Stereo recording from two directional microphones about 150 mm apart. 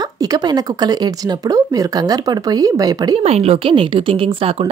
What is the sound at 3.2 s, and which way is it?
Speech, 45° right (ahead or behind).